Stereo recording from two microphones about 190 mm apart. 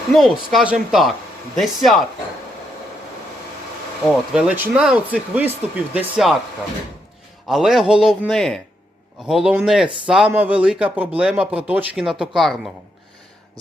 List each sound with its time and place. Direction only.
0.1 s a man's voice: centre (ahead or behind)
4.0 s speech: centre (ahead or behind)
7.4 s a man's voice: centre (ahead or behind)